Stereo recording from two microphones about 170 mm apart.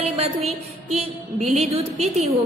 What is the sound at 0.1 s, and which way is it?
A woman's voice, 35° right (ahead or behind).